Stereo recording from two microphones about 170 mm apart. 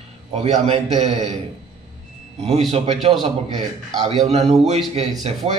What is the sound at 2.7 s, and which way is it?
Speech, 35° right (ahead or behind).